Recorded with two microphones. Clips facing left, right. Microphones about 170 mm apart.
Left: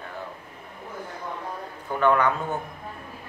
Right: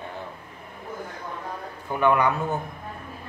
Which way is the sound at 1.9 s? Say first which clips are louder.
Even; 10° right (ahead or behind).